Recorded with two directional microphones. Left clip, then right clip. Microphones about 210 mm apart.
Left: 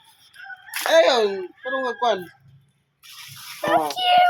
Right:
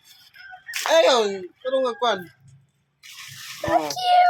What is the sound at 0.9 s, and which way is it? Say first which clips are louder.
Speech: left 1 dB; 40° right (ahead or behind).